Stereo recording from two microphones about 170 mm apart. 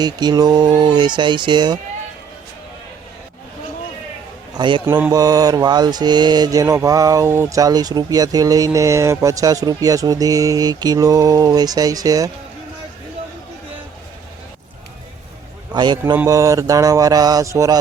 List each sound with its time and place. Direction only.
0.0 s mantra: 25° right (ahead or behind)
4.5 s a man's voice: 30° right (ahead or behind)
4.9 s mantra: 10° right (ahead or behind)
5.1 s mantra: 20° right (ahead or behind)
15.7 s a man's voice: 25° right (ahead or behind)
16.1 s mantra: 20° right (ahead or behind)